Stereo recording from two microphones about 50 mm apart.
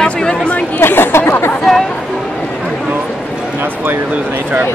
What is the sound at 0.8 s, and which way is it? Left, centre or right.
Speech, left.